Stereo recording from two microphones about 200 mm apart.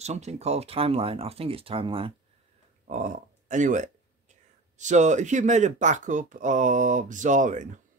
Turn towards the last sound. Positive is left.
turn(degrees=-40)  # may be behind; listen again after turning